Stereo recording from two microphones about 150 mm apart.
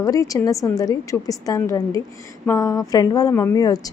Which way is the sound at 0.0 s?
25° left (ahead or behind).